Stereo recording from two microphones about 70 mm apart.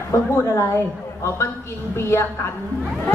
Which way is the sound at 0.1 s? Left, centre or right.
Left.